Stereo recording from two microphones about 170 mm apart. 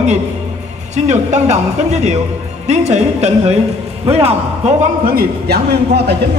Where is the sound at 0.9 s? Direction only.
45° right (ahead or behind).